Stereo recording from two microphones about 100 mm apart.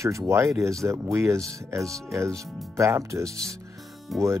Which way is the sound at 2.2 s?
30° right (ahead or behind).